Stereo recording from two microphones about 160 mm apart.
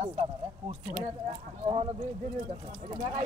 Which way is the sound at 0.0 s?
40° right (ahead or behind).